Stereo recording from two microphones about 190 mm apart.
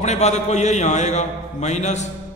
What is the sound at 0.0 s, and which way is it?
A man's voice, 35° left (ahead or behind).